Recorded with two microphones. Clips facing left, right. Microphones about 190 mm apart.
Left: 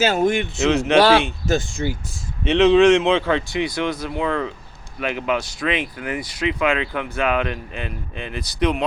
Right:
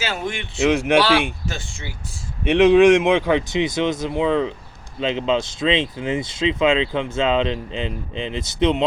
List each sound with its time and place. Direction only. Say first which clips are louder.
0.0 s speech: left 9 dB; 45° left (ahead or behind)
0.6 s speech: right 2 dB; 10° right (ahead or behind)
1.5 s speech: left 10 dB; 45° left (ahead or behind)
2.4 s speech: right 1 dB; 10° right (ahead or behind)